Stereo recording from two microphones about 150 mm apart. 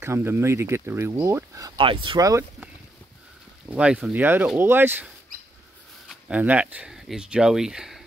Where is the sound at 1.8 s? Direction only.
35° right (ahead or behind).